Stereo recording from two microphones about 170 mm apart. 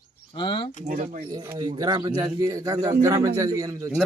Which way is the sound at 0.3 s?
30° left (ahead or behind).